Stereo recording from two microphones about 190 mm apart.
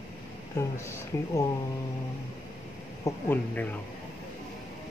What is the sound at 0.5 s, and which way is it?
Speech, 15° left (ahead or behind).